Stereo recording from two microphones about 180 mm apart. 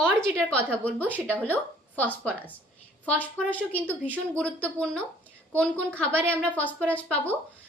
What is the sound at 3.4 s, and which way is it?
A woman's voice, 10° left (ahead or behind).